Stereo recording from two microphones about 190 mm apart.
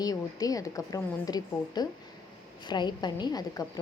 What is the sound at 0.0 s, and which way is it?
A woman's voice, 20° left (ahead or behind).